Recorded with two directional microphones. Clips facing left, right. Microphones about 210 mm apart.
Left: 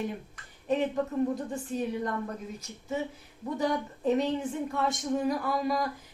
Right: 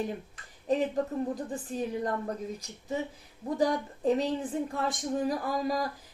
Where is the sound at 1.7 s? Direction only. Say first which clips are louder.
Left 2 dB; centre (ahead or behind).